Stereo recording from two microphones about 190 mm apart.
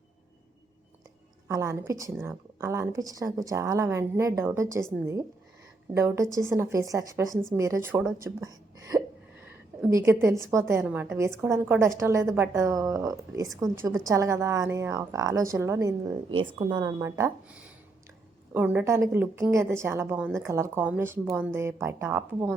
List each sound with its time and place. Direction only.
1.5 s a woman's voice: 15° right (ahead or behind)
9.5 s a sound: 15° right (ahead or behind)
10.5 s a woman's voice: 15° right (ahead or behind)